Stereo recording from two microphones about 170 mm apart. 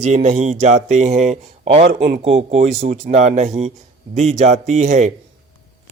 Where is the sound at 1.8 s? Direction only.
70° right (ahead or behind).